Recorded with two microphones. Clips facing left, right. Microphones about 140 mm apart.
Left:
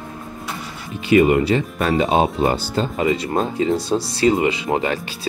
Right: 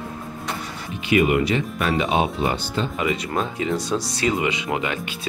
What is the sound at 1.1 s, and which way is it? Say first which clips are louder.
Speech: left 4 dB; 35° left (ahead or behind).